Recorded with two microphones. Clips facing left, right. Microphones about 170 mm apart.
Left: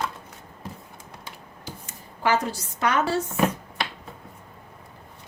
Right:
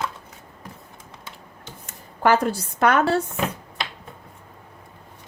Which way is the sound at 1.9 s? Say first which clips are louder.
Right 5 dB; 55° right (ahead or behind).